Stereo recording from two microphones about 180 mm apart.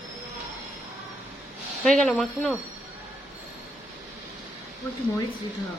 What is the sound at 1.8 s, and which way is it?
Speech, centre (ahead or behind).